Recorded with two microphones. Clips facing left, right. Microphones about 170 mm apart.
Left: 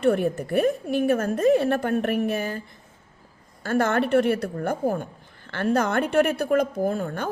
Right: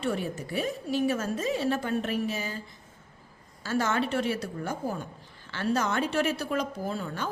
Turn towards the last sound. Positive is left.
turn(degrees=50)  # may be behind; listen again after turning